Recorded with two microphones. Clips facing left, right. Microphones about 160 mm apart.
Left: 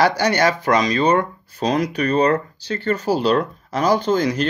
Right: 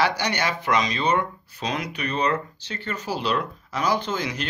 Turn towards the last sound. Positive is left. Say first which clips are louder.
# left 9 dB
turn(degrees=40)  # may be behind; listen again after turning